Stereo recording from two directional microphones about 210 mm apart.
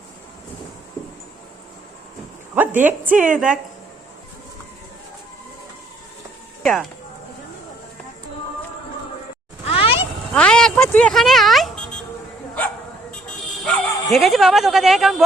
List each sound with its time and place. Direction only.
2.6 s a woman's voice: 10° right (ahead or behind)
6.6 s speech: centre (ahead or behind)
9.6 s vehicle: 25° left (ahead or behind)
10.3 s a sound: 5° left (ahead or behind)
13.2 s bow-wow: 5° left (ahead or behind)